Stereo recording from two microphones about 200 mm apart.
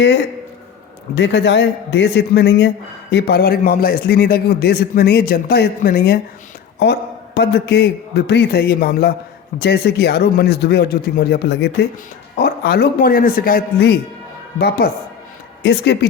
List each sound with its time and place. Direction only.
1.1 s a man's voice: 60° left (ahead or behind)